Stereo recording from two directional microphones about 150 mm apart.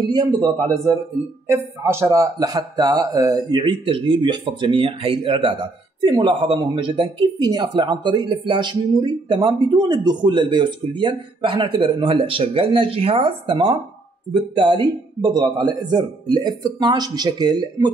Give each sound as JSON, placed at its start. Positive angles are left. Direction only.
{"t": 0.0, "sound": "speech", "side_deg": -30}